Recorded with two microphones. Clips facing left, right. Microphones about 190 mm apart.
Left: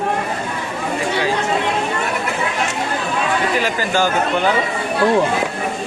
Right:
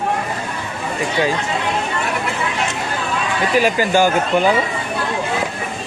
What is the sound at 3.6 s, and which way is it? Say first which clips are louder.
Speech: right 4 dB; 15° right (ahead or behind).